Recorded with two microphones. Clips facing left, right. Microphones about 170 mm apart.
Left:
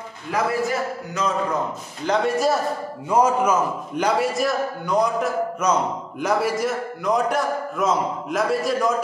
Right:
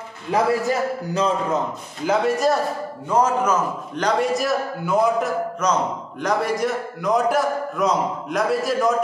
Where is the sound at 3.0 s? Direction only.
10° left (ahead or behind).